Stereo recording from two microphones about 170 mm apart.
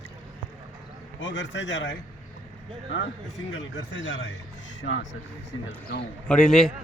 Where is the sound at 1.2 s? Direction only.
90° left.